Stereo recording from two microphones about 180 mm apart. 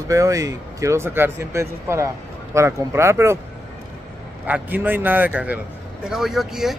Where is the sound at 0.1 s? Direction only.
20° right (ahead or behind).